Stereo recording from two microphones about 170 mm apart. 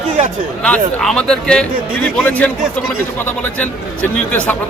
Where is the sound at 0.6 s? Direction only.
5° left (ahead or behind).